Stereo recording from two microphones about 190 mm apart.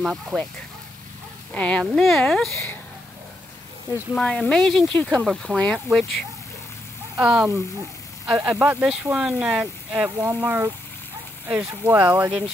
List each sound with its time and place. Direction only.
0.0 s speech: 5° right (ahead or behind)
1.5 s speech: 5° left (ahead or behind)
4.1 s speech: 5° left (ahead or behind)
7.2 s speech: 5° right (ahead or behind)
11.9 s speech: 20° right (ahead or behind)